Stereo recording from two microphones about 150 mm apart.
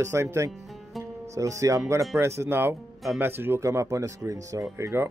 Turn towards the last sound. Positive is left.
turn(degrees=-20)  # may be behind; listen again after turning